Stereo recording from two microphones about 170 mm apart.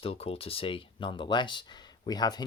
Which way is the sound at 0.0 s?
35° left (ahead or behind).